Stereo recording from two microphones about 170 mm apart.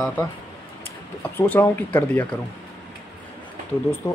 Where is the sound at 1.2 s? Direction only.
10° left (ahead or behind).